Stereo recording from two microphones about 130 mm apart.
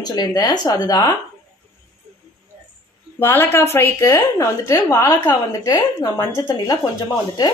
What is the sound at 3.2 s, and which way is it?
A woman's voice, 15° left (ahead or behind).